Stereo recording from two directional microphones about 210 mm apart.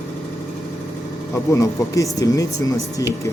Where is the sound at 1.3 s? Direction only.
15° left (ahead or behind).